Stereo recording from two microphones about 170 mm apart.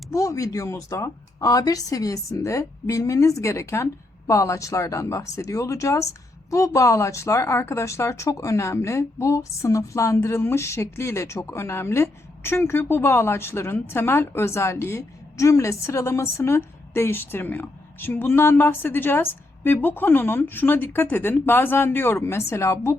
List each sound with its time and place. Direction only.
0.1 s speech: 20° left (ahead or behind)